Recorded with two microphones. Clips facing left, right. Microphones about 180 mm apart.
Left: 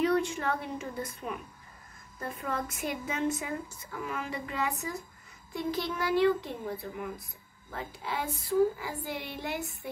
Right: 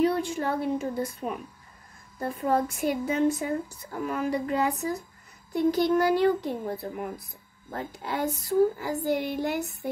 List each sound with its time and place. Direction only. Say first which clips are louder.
0.0 s a woman's voice: right 3 dB; 35° right (ahead or behind)
5.9 s speech: right 4 dB; 40° right (ahead or behind)
7.7 s child singing: right 4 dB; 45° right (ahead or behind)